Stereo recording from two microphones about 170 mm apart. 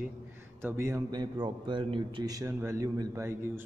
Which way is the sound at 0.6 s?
15° right (ahead or behind).